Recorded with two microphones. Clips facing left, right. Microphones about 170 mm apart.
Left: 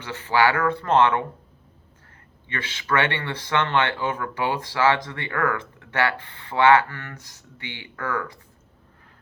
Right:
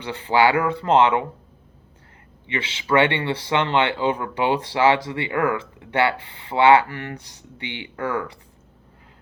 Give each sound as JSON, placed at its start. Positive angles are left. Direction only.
{"t": 0.0, "sound": "speech", "side_deg": -15}
{"t": 2.5, "sound": "speech", "side_deg": -15}